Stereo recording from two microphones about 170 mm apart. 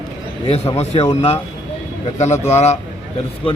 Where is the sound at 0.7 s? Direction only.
35° left (ahead or behind).